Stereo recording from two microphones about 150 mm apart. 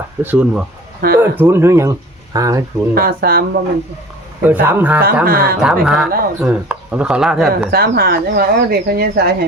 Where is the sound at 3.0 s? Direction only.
90° right.